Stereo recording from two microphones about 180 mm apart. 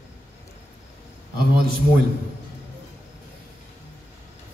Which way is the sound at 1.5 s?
60° right (ahead or behind).